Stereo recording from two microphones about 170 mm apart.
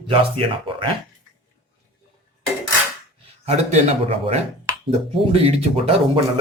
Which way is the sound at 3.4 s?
40° right (ahead or behind).